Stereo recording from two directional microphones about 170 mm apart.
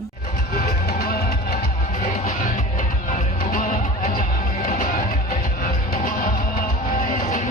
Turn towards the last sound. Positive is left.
turn(degrees=45)  # may be behind; listen again after turning